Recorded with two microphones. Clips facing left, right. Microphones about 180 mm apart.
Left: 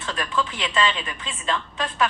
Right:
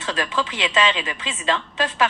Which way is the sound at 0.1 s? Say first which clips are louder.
Right 2 dB; 90° right.